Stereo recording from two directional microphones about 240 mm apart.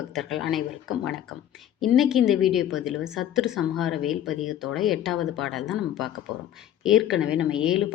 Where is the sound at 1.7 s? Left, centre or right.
Centre.